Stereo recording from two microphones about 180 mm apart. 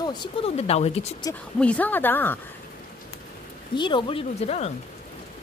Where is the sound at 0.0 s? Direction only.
25° left (ahead or behind).